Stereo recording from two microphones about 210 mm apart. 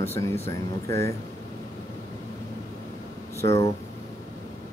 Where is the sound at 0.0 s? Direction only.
15° left (ahead or behind).